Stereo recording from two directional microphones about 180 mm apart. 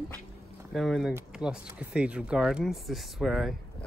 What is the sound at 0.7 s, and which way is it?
Speech, centre (ahead or behind).